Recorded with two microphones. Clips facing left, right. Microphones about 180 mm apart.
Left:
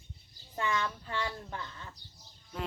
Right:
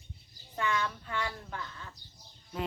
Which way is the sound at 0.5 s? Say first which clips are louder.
Right 1 dB; 20° left (ahead or behind).